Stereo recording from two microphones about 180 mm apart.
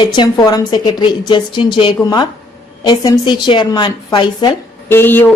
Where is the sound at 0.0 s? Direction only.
25° left (ahead or behind).